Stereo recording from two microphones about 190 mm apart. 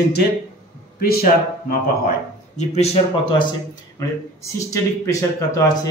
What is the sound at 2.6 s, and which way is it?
Speech, 35° left (ahead or behind).